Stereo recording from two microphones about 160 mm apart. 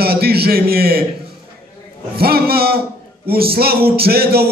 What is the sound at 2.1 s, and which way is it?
Speech, 75° right (ahead or behind).